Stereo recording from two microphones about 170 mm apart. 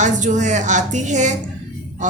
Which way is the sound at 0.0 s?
45° right (ahead or behind).